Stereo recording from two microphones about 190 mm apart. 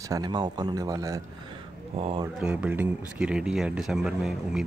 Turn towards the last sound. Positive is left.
turn(degrees=0)  # may be behind; listen again after turning